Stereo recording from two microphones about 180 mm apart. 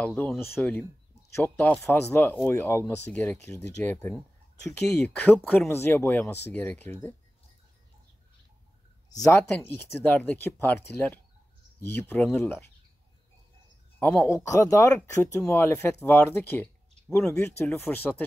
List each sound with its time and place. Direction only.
0.0 s speech: 5° left (ahead or behind)
9.1 s speech: 15° left (ahead or behind)
13.9 s speech: 10° left (ahead or behind)